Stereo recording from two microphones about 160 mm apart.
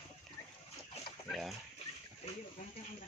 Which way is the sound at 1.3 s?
Centre (ahead or behind).